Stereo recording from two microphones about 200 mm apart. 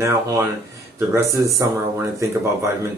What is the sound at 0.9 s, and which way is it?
Speech, 15° right (ahead or behind).